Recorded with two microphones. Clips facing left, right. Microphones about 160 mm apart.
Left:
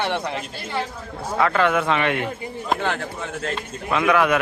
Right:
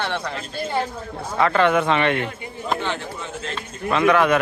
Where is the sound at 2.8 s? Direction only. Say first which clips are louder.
Left 2 dB; 50° left (ahead or behind).